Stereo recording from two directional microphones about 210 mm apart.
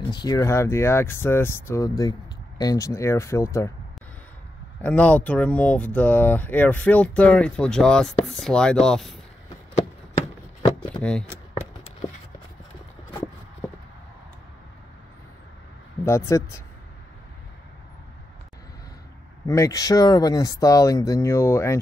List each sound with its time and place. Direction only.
0.0 s speech: 20° left (ahead or behind)
4.8 s speech: 5° left (ahead or behind)
11.0 s speech: 5° left (ahead or behind)
16.0 s speech: 15° left (ahead or behind)
19.4 s speech: 15° left (ahead or behind)